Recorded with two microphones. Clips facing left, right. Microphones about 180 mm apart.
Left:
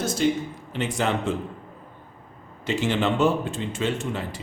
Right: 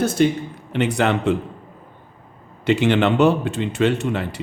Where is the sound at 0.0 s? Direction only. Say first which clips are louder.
Right 5 dB; 60° right (ahead or behind).